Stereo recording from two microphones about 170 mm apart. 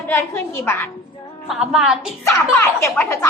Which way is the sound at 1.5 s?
5° right (ahead or behind).